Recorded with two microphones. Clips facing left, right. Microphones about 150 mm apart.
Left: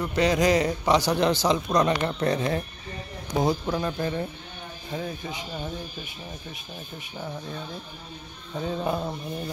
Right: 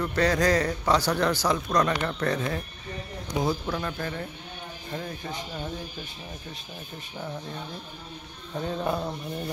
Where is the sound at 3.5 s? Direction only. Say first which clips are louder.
Left 3 dB; 15° left (ahead or behind).